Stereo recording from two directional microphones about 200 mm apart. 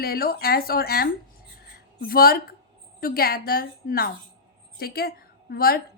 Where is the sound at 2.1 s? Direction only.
45° left (ahead or behind).